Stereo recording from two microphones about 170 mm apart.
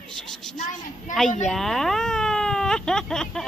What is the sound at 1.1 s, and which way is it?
Speech, 50° left (ahead or behind).